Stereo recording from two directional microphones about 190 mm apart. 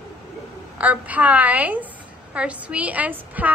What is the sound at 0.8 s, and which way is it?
A woman's voice, 10° right (ahead or behind).